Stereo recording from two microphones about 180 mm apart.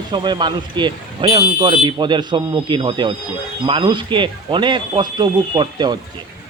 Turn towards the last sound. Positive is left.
turn(degrees=-25)  # may be behind; listen again after turning